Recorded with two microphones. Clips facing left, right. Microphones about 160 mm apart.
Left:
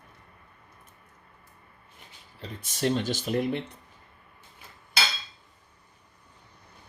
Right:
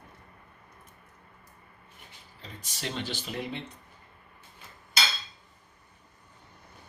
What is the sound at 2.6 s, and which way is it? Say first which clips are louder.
Speech: left 9 dB; 50° left (ahead or behind).